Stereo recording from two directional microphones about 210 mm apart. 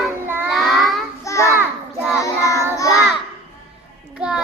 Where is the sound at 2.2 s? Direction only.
15° left (ahead or behind).